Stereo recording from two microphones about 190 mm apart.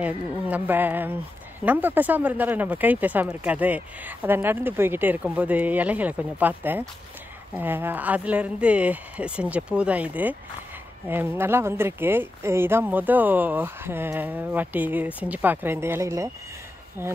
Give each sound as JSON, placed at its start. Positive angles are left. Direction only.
{"t": 0.0, "sound": "speech", "side_deg": -10}